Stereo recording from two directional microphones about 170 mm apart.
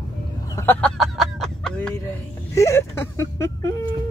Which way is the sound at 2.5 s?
15° left (ahead or behind).